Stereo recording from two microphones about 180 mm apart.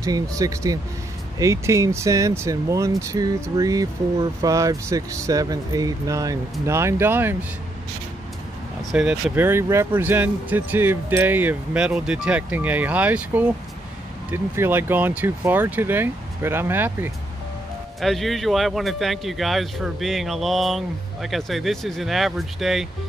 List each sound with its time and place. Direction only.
0.0 s speech: 20° right (ahead or behind)
8.9 s speech: 5° right (ahead or behind)
18.0 s speech: centre (ahead or behind)